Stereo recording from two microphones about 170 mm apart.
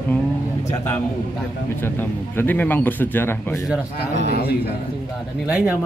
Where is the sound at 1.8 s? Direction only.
10° left (ahead or behind).